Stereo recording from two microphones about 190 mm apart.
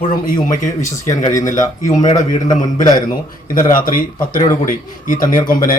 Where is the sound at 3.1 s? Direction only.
45° left (ahead or behind).